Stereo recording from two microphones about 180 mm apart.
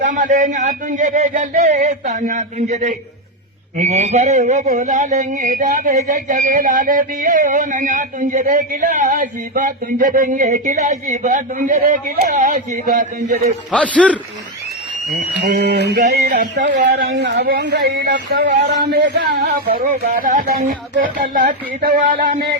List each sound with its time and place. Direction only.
0.0 s a man's voice: 45° right (ahead or behind)
13.7 s speech: 5° left (ahead or behind)
15.4 s speech: 65° right (ahead or behind)
19.8 s a man's voice: 40° right (ahead or behind)